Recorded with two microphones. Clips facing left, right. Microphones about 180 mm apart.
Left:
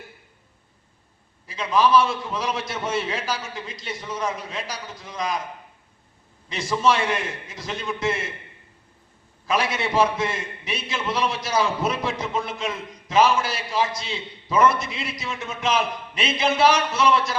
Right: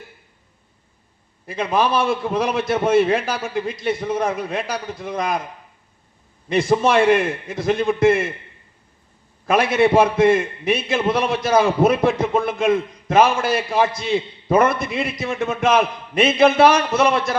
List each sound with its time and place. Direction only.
1.5 s a man's voice: 55° right (ahead or behind)
6.5 s a man's voice: 55° right (ahead or behind)
9.5 s a man's voice: 55° right (ahead or behind)